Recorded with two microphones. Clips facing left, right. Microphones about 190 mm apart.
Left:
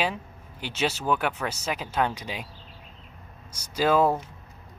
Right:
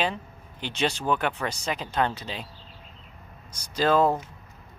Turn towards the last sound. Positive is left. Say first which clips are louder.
# even
turn(degrees=10)  # may be behind; listen again after turning